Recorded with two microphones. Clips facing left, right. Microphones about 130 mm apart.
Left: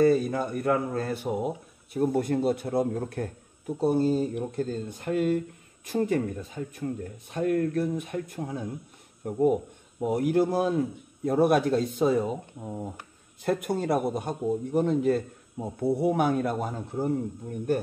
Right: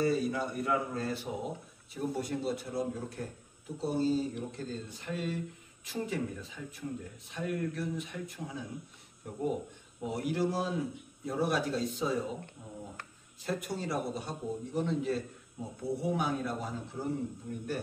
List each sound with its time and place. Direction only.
0.0 s speech: 50° left (ahead or behind)